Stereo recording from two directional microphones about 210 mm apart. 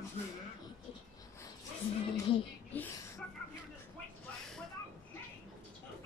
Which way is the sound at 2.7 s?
10° left (ahead or behind).